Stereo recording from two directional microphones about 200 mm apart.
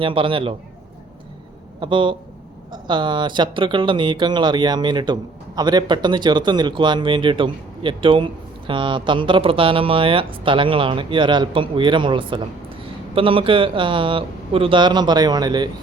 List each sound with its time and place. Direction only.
0.0 s speech: 25° right (ahead or behind)
1.8 s speech: 25° right (ahead or behind)